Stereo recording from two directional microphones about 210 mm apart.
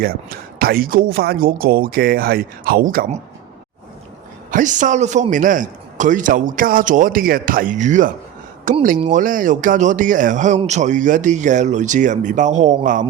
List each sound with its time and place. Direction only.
0.0 s speech: 45° right (ahead or behind)
4.5 s speech: 35° right (ahead or behind)